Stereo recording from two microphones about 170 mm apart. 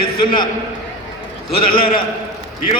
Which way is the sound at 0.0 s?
60° left (ahead or behind).